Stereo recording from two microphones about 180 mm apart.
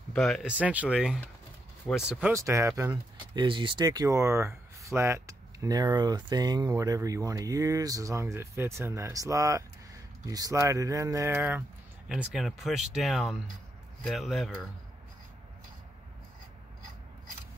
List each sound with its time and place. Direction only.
0.1 s speech: centre (ahead or behind)